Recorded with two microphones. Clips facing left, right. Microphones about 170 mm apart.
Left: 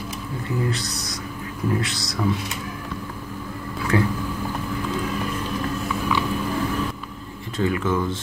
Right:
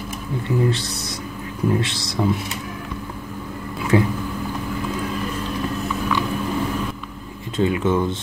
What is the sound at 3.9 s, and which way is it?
Speech, 20° right (ahead or behind).